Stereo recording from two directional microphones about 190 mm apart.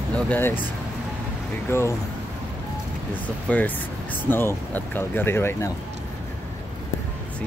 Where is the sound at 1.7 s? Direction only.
15° left (ahead or behind).